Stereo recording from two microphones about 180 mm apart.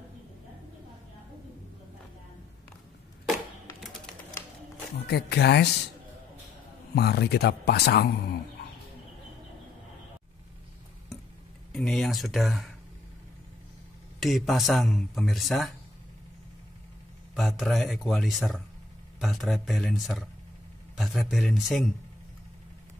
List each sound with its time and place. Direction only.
4.9 s speech: 65° left (ahead or behind)
7.0 s speech: 65° left (ahead or behind)
11.7 s speech: centre (ahead or behind)
14.2 s speech: centre (ahead or behind)
17.4 s speech: centre (ahead or behind)